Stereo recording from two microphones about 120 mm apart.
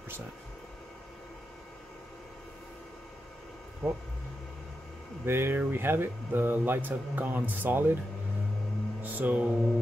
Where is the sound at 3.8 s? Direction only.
15° right (ahead or behind).